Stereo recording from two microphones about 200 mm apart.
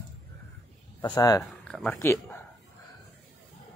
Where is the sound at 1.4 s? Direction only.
Centre (ahead or behind).